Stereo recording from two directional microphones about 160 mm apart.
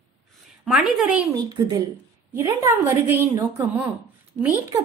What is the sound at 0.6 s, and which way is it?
Speech, centre (ahead or behind).